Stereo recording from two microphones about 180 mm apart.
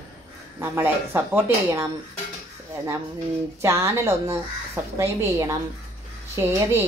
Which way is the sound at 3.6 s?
15° right (ahead or behind).